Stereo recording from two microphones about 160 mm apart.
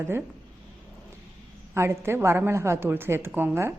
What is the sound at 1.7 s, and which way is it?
A woman's voice, 15° right (ahead or behind).